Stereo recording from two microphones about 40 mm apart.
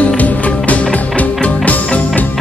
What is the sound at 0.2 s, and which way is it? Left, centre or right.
Music, left.